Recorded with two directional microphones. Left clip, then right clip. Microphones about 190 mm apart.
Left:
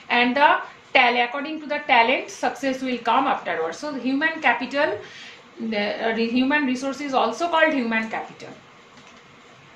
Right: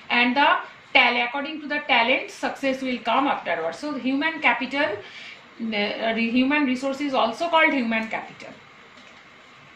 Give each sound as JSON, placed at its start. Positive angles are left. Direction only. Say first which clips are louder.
{"t": 0.1, "sound": "a woman's voice", "louder": "left 1 dB", "side_deg": 35}